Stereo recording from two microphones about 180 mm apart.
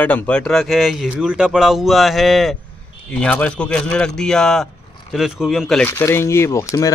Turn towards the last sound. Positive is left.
turn(degrees=15)  # may be behind; listen again after turning